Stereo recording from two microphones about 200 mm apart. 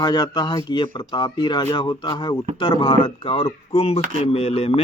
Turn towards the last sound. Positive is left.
turn(degrees=30)  # may be behind; listen again after turning